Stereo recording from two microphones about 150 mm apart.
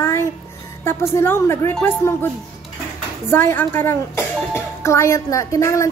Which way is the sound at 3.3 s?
15° left (ahead or behind).